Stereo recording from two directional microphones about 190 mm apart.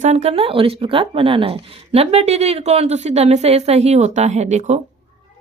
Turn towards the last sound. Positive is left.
turn(degrees=-35)  # may be behind; listen again after turning